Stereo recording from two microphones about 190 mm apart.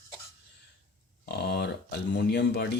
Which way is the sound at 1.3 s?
60° left (ahead or behind).